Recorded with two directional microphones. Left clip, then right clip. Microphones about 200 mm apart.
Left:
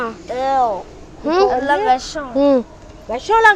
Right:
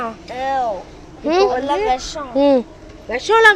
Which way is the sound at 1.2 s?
Centre (ahead or behind).